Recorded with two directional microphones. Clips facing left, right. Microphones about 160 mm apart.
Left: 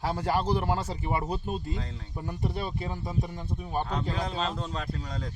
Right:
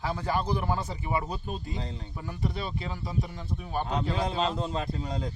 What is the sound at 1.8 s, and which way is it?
Speech, 25° right (ahead or behind).